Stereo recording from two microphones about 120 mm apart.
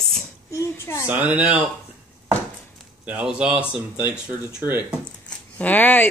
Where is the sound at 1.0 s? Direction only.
10° right (ahead or behind).